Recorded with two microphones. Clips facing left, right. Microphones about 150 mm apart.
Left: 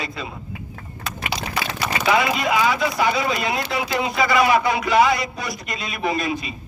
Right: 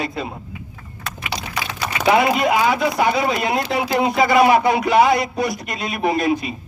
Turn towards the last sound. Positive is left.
turn(degrees=-55)  # may be behind; listen again after turning